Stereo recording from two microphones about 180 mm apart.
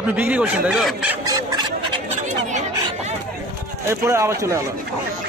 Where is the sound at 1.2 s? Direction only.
20° right (ahead or behind).